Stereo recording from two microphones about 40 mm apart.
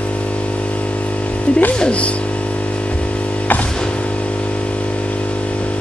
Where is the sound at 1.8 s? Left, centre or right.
Left.